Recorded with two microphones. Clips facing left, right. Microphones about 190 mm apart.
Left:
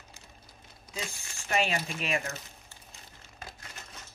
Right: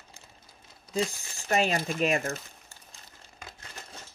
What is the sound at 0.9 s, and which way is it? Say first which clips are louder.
Speech: right 10 dB; 35° right (ahead or behind).